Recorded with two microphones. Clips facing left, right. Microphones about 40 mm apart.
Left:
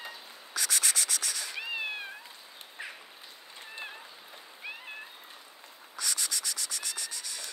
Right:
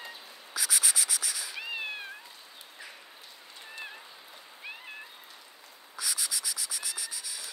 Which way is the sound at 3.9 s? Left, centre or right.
Centre.